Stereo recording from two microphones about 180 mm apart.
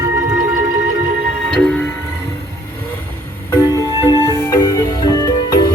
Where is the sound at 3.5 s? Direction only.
15° left (ahead or behind).